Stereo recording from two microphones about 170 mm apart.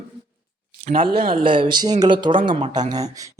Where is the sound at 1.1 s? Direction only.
60° right (ahead or behind).